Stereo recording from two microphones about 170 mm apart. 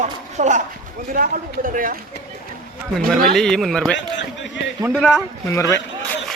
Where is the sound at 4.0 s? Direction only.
90° left.